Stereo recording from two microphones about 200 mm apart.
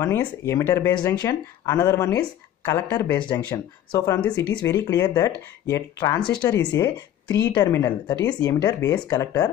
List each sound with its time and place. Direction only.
0.0 s a woman's voice: 15° left (ahead or behind)